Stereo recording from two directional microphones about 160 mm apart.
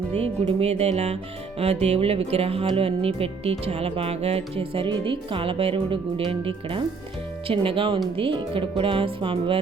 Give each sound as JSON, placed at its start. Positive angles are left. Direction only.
{"t": 0.2, "sound": "music", "side_deg": -40}